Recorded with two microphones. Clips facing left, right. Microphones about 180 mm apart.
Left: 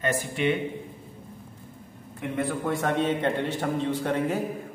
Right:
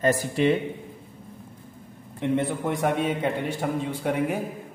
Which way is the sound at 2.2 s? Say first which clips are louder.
Right 4 dB; 25° right (ahead or behind).